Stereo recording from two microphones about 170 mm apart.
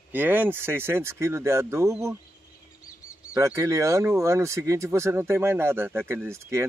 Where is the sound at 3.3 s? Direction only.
15° right (ahead or behind).